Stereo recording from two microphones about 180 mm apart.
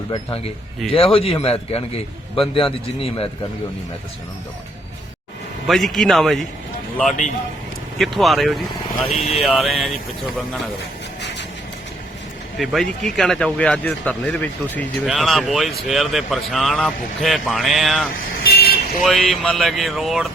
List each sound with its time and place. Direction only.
0.9 s a man's voice: 30° left (ahead or behind)
5.6 s speech: centre (ahead or behind)
7.1 s speech: 45° left (ahead or behind)
7.9 s speech: centre (ahead or behind)
11.2 s a sound: 80° left
12.5 s speech: centre (ahead or behind)
18.4 s vehicle: 60° left (ahead or behind)
19.0 s speech: centre (ahead or behind)